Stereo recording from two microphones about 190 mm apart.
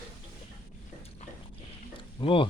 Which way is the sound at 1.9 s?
25° left (ahead or behind).